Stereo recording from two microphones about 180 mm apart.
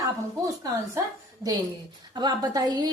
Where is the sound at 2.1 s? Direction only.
25° right (ahead or behind).